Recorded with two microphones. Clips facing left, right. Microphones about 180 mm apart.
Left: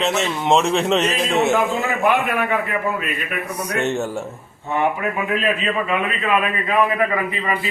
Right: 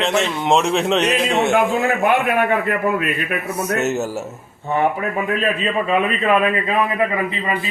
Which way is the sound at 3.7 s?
5° right (ahead or behind).